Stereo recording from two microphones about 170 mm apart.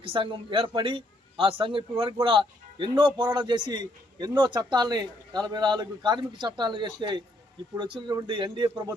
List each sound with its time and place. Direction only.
0.0 s a man's voice: 30° right (ahead or behind)